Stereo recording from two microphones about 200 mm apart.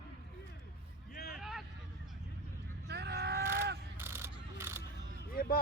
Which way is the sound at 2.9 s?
55° right (ahead or behind).